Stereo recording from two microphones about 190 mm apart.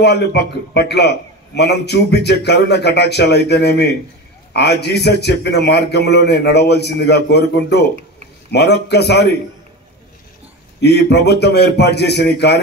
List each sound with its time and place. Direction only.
0.0 s a man's voice: 60° left (ahead or behind)
10.8 s a man's voice: 60° left (ahead or behind)